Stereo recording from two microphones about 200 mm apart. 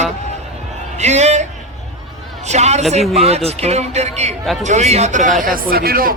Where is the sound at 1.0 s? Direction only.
35° right (ahead or behind).